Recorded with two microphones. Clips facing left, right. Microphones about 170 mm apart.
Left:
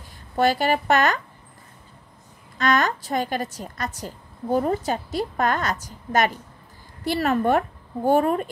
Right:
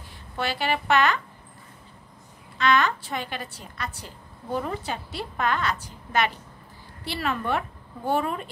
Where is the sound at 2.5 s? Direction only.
45° left (ahead or behind).